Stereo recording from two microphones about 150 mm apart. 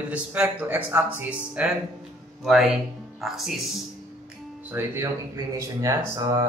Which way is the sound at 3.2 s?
Centre (ahead or behind).